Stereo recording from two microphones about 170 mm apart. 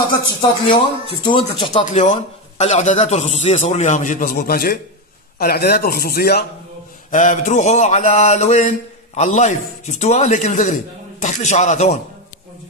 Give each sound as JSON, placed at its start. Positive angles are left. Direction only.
{"t": 0.3, "sound": "speech", "side_deg": 30}
{"t": 1.9, "sound": "mantra", "side_deg": 45}
{"t": 5.4, "sound": "speech", "side_deg": 65}
{"t": 7.1, "sound": "mantra", "side_deg": 50}